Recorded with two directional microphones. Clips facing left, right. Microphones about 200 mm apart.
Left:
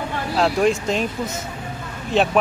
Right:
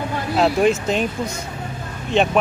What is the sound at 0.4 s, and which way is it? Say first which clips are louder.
Speech: right 2 dB; centre (ahead or behind).